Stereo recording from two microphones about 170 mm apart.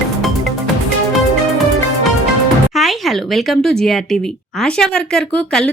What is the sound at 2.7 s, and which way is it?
Speech, centre (ahead or behind).